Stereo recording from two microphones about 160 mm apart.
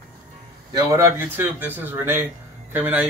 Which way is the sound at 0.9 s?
15° right (ahead or behind).